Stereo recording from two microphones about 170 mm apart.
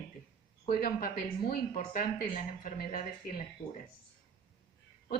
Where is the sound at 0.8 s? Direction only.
60° left (ahead or behind).